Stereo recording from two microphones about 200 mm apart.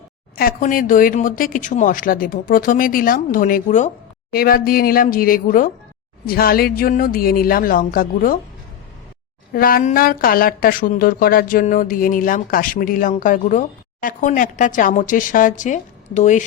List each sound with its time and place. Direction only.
0.3 s a woman's voice: 45° left (ahead or behind)
9.5 s a woman's voice: 45° left (ahead or behind)